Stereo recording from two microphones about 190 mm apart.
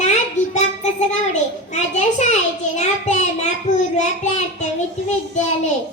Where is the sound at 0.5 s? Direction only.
40° left (ahead or behind).